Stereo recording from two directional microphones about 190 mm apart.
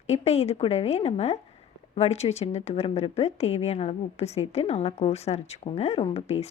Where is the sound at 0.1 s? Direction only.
35° left (ahead or behind).